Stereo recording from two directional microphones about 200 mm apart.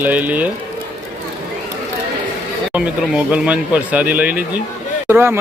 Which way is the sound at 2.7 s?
5° right (ahead or behind).